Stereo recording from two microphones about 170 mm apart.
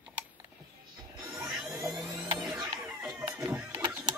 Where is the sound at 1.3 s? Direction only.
5° right (ahead or behind).